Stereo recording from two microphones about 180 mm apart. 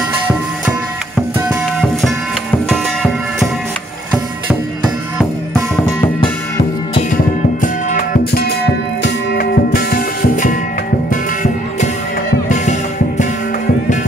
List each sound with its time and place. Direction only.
1.5 s music: centre (ahead or behind)
7.6 s music: 45° left (ahead or behind)